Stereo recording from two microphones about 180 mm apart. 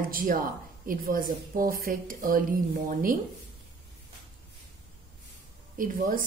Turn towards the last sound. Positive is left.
turn(degrees=-50)  # may be behind; listen again after turning